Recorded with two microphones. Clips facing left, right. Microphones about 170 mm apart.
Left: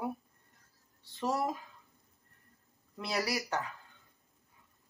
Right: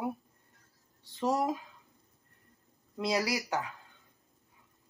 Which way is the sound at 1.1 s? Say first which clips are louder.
Right 3 dB; 15° right (ahead or behind).